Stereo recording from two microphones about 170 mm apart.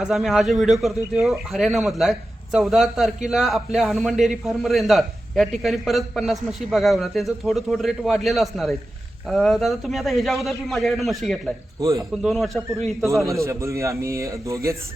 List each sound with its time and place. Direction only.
0.0 s a man's voice: centre (ahead or behind)
11.8 s speech: 20° right (ahead or behind)
12.1 s a man's voice: centre (ahead or behind)
13.2 s a man's voice: 15° right (ahead or behind)